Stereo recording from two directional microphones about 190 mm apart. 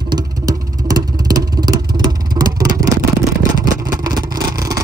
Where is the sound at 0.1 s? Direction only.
20° right (ahead or behind).